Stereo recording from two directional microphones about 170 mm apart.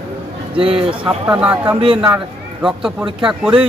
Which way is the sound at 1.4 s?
10° right (ahead or behind).